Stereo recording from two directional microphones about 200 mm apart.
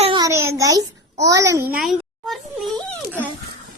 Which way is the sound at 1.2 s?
15° right (ahead or behind).